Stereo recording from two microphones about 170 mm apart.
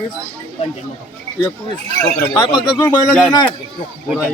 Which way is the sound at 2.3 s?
25° left (ahead or behind).